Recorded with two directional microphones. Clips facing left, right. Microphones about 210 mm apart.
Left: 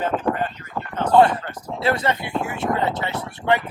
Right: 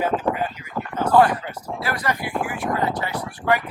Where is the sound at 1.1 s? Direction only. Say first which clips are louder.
Left 2 dB; 25° left (ahead or behind).